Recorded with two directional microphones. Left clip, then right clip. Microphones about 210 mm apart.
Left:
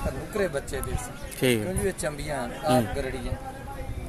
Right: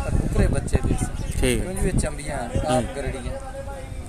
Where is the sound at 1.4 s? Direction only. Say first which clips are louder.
Even; centre (ahead or behind).